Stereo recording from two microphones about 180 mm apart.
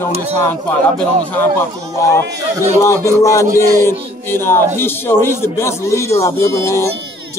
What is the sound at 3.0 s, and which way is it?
Speech, 15° left (ahead or behind).